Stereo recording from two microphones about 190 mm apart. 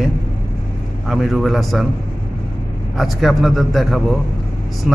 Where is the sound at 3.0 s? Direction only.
Centre (ahead or behind).